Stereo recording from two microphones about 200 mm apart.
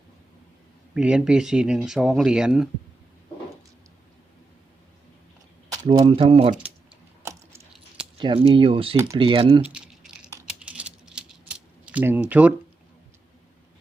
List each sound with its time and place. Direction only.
0.9 s speech: 5° right (ahead or behind)
5.7 s speech: 20° right (ahead or behind)
7.3 s chewing: 15° right (ahead or behind)
8.2 s speech: 25° right (ahead or behind)
9.6 s a sound: 5° right (ahead or behind)
10.6 s rattle: 5° right (ahead or behind)